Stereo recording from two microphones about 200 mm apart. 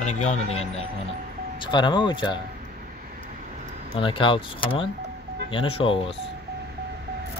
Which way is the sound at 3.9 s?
25° left (ahead or behind).